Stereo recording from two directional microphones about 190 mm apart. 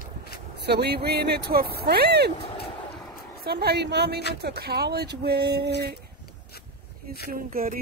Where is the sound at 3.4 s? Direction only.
55° right (ahead or behind).